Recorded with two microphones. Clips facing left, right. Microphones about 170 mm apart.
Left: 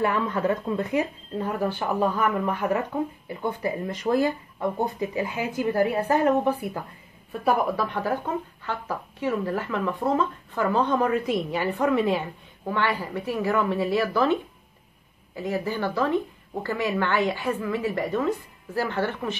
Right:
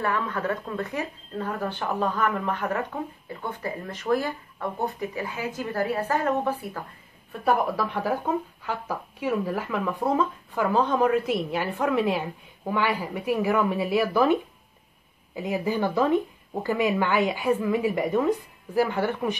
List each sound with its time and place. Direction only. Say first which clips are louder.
0.0 s speech: left 3 dB; 20° left (ahead or behind)
7.4 s speech: even; 5° right (ahead or behind)
15.3 s speech: right 1 dB; 15° right (ahead or behind)